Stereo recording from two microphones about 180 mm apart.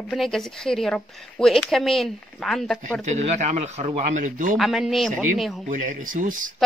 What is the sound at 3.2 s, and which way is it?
Speech, 40° right (ahead or behind).